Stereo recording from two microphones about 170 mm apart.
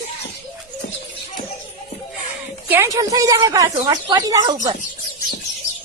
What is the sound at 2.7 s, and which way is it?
A woman's voice, 15° right (ahead or behind).